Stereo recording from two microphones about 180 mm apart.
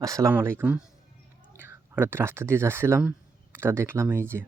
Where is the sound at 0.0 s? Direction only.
15° right (ahead or behind).